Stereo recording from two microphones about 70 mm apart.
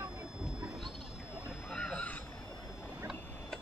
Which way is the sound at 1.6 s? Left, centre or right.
Centre.